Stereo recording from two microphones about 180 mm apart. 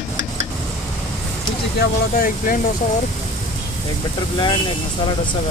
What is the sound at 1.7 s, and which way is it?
Speech, 50° left (ahead or behind).